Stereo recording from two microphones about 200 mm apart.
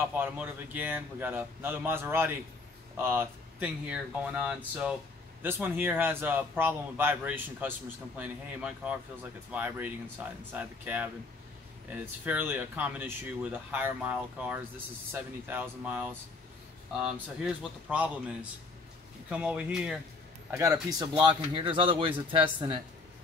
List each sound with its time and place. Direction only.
0.1 s a man's voice: 10° right (ahead or behind)
12.3 s a man's voice: 10° right (ahead or behind)
20.5 s speech: 15° right (ahead or behind)